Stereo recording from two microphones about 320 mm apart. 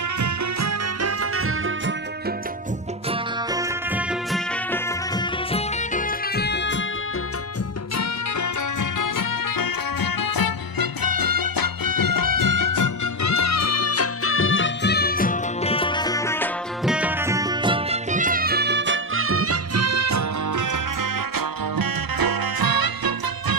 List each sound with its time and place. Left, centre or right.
0.2 s music: right
3.1 s music: centre
5.1 s music: centre; by 6.8 s left
7.9 s music: left; by 23.6 s right